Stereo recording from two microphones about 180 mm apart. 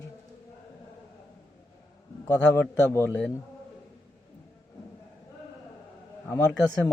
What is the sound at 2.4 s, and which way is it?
Speech, 10° left (ahead or behind).